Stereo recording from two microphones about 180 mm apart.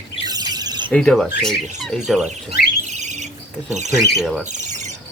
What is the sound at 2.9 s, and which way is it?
Bird, 40° right (ahead or behind).